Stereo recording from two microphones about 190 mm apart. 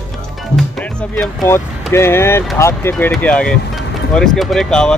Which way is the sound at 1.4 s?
15° left (ahead or behind).